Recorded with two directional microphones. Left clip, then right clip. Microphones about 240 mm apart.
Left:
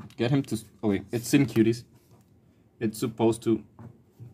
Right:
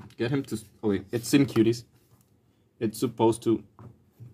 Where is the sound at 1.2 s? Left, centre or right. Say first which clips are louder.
Right 1 dB; centre.